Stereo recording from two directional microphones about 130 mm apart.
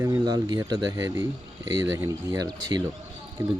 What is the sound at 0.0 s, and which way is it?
Speech, 30° right (ahead or behind).